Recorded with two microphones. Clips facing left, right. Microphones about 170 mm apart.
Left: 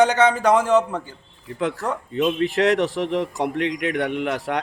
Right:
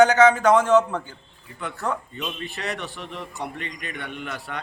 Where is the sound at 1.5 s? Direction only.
90° left.